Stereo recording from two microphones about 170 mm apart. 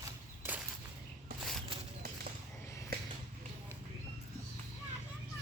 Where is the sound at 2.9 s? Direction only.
65° right (ahead or behind).